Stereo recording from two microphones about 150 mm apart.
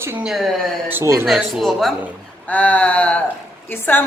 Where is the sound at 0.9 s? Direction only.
15° right (ahead or behind).